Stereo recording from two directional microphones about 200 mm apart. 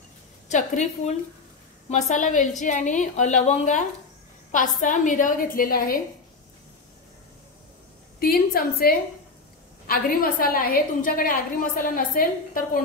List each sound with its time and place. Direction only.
0.5 s a woman's voice: 35° left (ahead or behind)
8.2 s a woman's voice: 50° left (ahead or behind)